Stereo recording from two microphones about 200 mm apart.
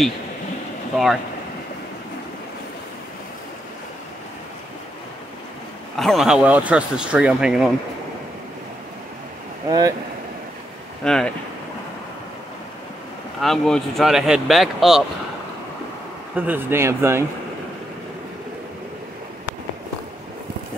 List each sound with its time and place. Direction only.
5.9 s speech: centre (ahead or behind)
9.7 s speech: 20° right (ahead or behind)
11.1 s speech: 5° left (ahead or behind)
13.4 s speech: centre (ahead or behind)
16.3 s speech: 10° right (ahead or behind)